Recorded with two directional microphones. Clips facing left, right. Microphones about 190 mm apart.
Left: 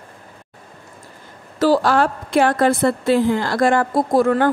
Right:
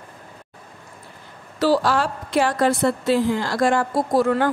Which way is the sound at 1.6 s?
50° left (ahead or behind).